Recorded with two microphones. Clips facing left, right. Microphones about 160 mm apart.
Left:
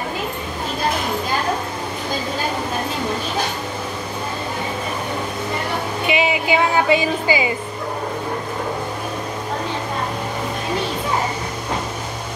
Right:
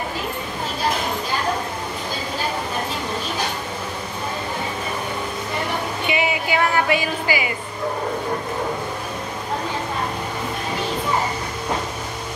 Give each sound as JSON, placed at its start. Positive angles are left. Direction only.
{"t": 6.0, "sound": "music", "side_deg": 20}